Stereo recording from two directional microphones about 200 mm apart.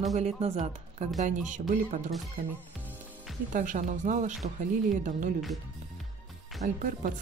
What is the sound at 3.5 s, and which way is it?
Speech, 40° right (ahead or behind).